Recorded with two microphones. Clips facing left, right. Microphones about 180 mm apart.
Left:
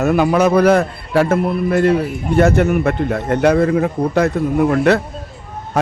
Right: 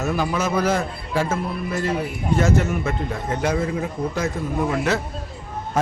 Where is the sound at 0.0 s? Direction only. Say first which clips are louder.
Left 9 dB; 65° left (ahead or behind).